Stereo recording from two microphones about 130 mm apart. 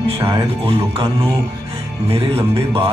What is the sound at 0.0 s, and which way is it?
A man's voice, 45° right (ahead or behind).